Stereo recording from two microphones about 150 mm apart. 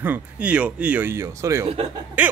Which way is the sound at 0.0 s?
10° right (ahead or behind).